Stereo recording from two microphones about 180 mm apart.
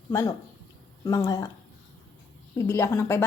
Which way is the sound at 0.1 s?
20° left (ahead or behind).